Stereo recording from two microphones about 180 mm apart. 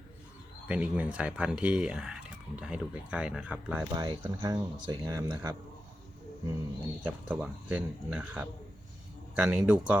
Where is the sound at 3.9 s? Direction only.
25° right (ahead or behind).